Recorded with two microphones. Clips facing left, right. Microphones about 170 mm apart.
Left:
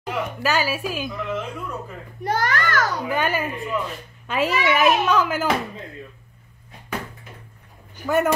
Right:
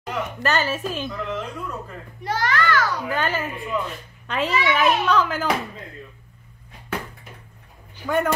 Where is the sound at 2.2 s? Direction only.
50° left (ahead or behind).